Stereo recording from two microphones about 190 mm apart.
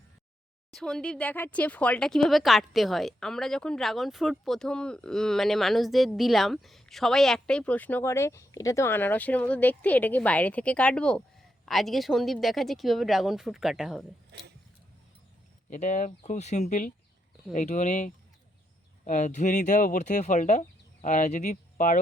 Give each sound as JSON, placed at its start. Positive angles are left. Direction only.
{"t": 0.7, "sound": "speech", "side_deg": 0}
{"t": 14.3, "sound": "a sound", "side_deg": -60}
{"t": 15.7, "sound": "speech", "side_deg": 40}